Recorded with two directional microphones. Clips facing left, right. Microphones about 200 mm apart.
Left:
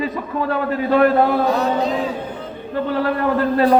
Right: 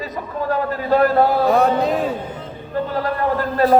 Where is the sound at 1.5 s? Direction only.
55° right (ahead or behind).